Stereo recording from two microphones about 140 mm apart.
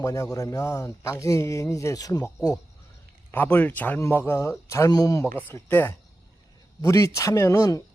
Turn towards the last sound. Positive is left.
turn(degrees=20)  # may be behind; listen again after turning